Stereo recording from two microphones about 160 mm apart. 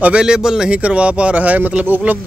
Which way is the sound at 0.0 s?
5° right (ahead or behind).